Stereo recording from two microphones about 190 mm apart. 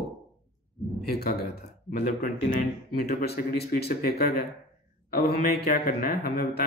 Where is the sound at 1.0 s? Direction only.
55° left (ahead or behind).